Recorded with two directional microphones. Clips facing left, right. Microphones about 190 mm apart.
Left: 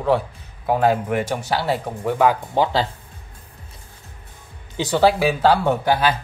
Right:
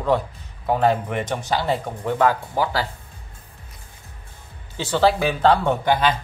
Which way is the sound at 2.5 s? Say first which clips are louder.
Left 3 dB; 25° left (ahead or behind).